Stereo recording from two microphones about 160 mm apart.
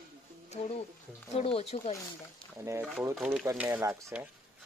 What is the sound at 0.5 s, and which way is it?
Speech, 40° left (ahead or behind).